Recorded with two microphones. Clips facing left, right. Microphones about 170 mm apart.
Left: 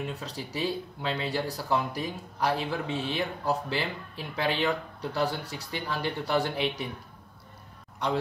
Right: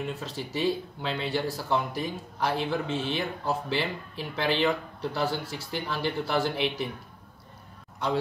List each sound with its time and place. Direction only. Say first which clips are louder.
0.0 s speech: right 2 dB; centre (ahead or behind)
8.0 s speech: right 1 dB; centre (ahead or behind)